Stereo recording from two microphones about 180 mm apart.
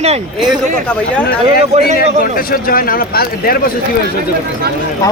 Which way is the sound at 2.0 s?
55° left (ahead or behind).